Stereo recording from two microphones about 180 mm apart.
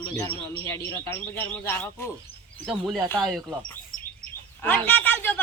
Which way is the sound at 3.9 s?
50° left (ahead or behind).